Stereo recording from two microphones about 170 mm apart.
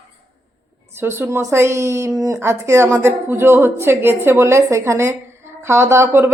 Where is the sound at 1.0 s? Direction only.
15° right (ahead or behind).